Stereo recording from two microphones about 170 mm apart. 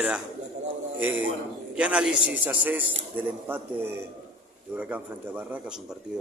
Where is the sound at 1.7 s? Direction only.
5° right (ahead or behind).